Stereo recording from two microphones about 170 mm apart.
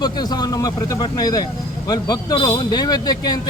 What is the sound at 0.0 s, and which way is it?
A man's voice, 25° left (ahead or behind).